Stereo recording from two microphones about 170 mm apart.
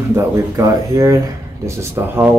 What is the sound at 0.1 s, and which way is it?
Speech, 15° right (ahead or behind).